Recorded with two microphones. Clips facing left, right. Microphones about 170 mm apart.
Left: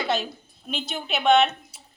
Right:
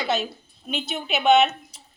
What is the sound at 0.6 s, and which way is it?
A woman's voice, centre (ahead or behind).